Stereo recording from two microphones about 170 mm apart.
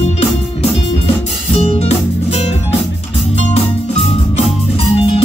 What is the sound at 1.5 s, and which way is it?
Music, 35° left (ahead or behind).